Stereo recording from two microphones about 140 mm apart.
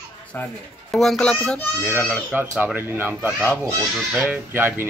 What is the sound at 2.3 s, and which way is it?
Speech, 15° right (ahead or behind).